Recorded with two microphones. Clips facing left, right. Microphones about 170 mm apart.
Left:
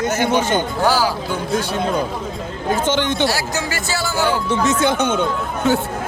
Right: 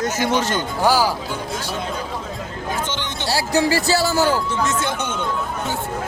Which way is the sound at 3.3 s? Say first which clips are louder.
Right 4 dB; 30° right (ahead or behind).